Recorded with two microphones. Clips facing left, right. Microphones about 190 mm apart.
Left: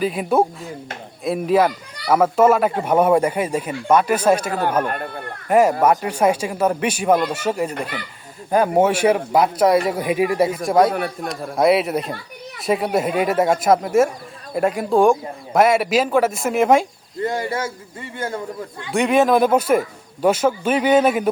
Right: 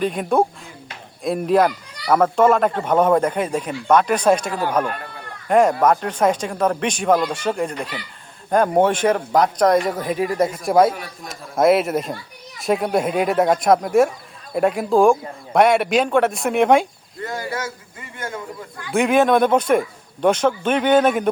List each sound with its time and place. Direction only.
0.0 s a man's voice: 5° left (ahead or behind)
10.9 s a man's voice: 60° left (ahead or behind)
11.5 s a man's voice: centre (ahead or behind)
17.2 s speech: 25° left (ahead or behind)
18.9 s a man's voice: centre (ahead or behind)